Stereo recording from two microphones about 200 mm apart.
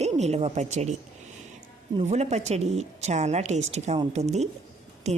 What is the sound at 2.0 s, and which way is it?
Speech, 35° right (ahead or behind).